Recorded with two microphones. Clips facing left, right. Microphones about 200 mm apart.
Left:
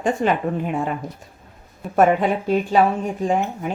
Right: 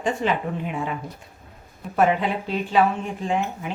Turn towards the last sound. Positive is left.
turn(degrees=45)  # may be behind; listen again after turning